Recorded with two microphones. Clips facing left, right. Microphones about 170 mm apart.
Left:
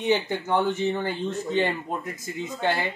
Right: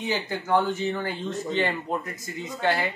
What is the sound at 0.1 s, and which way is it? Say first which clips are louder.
Speech: left 1 dB; 20° left (ahead or behind).